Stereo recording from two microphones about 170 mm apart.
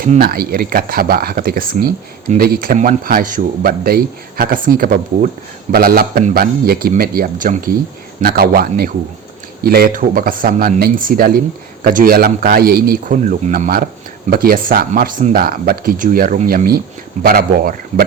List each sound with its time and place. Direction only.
0.0 s speech: 60° right (ahead or behind)